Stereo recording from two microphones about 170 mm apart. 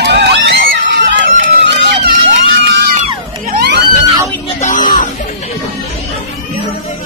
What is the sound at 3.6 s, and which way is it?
Screaming, 80° right.